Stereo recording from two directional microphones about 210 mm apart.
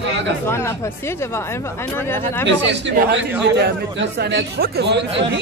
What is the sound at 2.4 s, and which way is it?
A man's voice, 55° right (ahead or behind).